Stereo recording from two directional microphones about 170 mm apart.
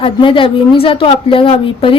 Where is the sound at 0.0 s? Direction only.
30° left (ahead or behind).